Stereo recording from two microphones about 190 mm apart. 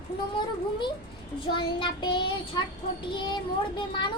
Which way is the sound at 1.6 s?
25° left (ahead or behind).